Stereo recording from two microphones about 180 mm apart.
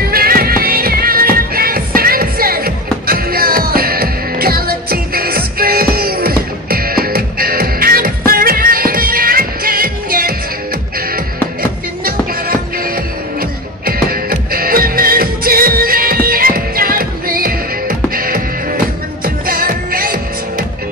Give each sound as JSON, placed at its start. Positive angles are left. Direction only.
{"t": 0.1, "sound": "music", "side_deg": -55}
{"t": 12.0, "sound": "music", "side_deg": -55}